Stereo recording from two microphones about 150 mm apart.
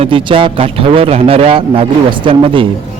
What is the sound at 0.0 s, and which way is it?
A man's voice, 35° right (ahead or behind).